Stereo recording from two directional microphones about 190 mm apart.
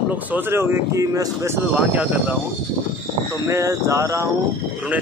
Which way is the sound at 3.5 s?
15° right (ahead or behind).